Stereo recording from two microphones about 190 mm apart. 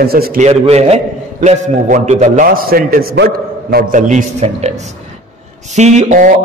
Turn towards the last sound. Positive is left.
turn(degrees=-40)  # may be behind; listen again after turning